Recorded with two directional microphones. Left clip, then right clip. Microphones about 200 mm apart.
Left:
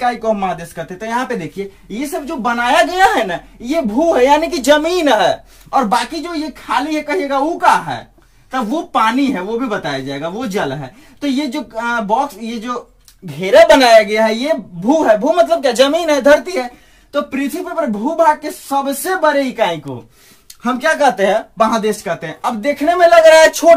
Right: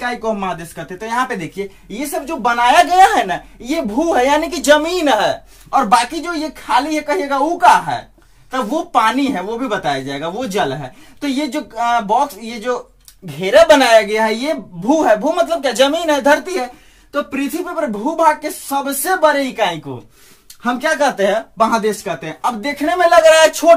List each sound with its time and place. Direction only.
0.0 s speech: 20° left (ahead or behind)
20.6 s speech: 20° left (ahead or behind)